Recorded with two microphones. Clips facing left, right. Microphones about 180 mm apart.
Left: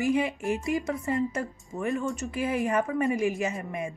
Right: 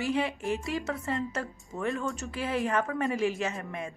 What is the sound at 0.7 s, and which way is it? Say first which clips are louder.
Speech: left 4 dB; 10° left (ahead or behind).